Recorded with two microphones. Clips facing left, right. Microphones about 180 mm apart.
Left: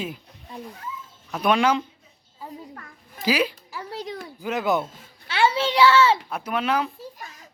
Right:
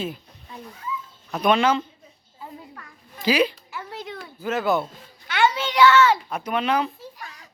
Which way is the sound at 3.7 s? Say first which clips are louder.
Left 2 dB; 35° left (ahead or behind).